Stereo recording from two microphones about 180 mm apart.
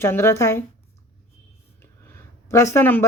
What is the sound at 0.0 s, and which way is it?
Speech, 15° left (ahead or behind).